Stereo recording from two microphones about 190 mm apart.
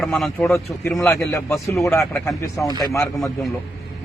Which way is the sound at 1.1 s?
15° left (ahead or behind).